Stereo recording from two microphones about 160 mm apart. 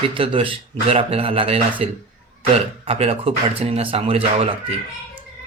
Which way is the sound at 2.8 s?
40° right (ahead or behind).